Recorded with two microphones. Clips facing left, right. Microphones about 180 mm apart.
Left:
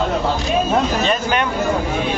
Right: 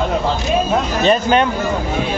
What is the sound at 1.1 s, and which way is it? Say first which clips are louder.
Speech: right 5 dB; 30° right (ahead or behind).